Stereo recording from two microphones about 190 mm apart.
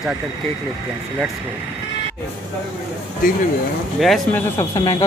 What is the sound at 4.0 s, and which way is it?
Speech, centre (ahead or behind).